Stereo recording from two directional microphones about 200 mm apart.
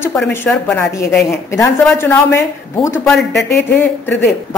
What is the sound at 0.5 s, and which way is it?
Speech, 5° left (ahead or behind).